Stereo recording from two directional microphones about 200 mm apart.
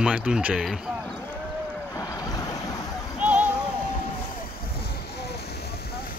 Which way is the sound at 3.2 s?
5° right (ahead or behind).